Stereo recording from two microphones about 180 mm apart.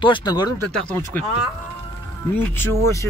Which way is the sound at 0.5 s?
10° left (ahead or behind).